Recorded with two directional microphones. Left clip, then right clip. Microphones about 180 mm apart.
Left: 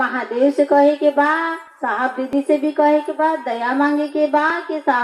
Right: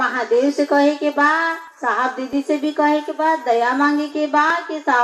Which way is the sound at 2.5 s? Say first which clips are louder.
Left 3 dB; 50° left (ahead or behind).